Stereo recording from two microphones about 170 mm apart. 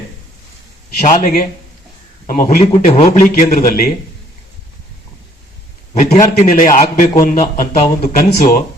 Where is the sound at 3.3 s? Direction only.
65° left (ahead or behind).